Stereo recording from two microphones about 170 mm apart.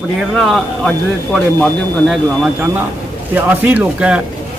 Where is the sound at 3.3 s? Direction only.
10° right (ahead or behind).